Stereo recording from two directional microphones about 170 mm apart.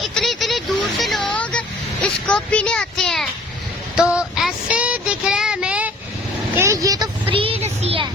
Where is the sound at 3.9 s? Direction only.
5° right (ahead or behind).